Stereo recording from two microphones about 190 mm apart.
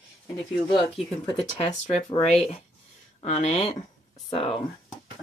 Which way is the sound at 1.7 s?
40° left (ahead or behind).